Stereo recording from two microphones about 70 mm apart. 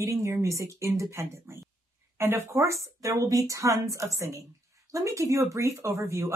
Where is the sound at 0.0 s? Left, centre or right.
Right.